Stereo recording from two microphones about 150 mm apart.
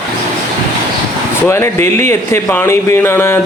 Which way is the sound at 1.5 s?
15° left (ahead or behind).